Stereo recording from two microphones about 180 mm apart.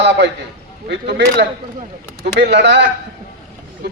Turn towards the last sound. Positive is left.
turn(degrees=-60)  # may be behind; listen again after turning